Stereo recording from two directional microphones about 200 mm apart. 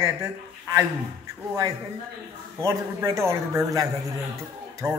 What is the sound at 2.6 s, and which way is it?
A man's voice, 15° right (ahead or behind).